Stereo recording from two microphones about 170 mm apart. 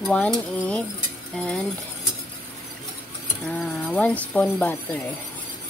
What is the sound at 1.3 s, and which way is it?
Speech, 5° left (ahead or behind).